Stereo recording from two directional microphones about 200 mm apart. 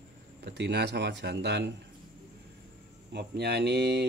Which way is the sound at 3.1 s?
55° right (ahead or behind).